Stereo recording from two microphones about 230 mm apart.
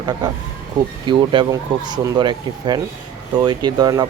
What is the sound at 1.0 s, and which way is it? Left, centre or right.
Speech, right.